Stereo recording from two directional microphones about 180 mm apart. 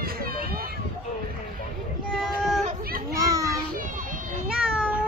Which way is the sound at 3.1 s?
20° right (ahead or behind).